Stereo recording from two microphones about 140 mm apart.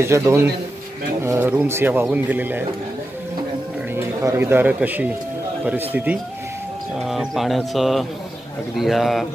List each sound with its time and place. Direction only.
0.0 s a man's voice: 20° right (ahead or behind)
3.9 s speech: 20° right (ahead or behind); by 9.2 s centre (ahead or behind)